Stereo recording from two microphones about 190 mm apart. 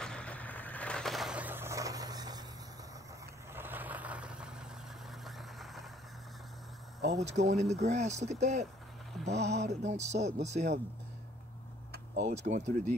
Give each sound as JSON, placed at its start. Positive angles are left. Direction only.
{"t": 0.0, "sound": "vehicle", "side_deg": 5}
{"t": 3.5, "sound": "vehicle", "side_deg": -10}
{"t": 7.2, "sound": "speech", "side_deg": -35}
{"t": 9.1, "sound": "a sound", "side_deg": 0}
{"t": 9.5, "sound": "speech", "side_deg": -35}
{"t": 11.9, "sound": "tick-tock", "side_deg": -60}
{"t": 12.4, "sound": "speech", "side_deg": -40}